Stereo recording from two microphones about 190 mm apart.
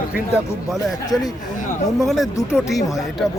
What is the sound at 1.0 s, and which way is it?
Speech, 20° left (ahead or behind).